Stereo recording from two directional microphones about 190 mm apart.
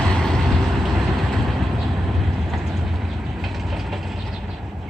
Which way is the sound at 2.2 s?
Centre (ahead or behind).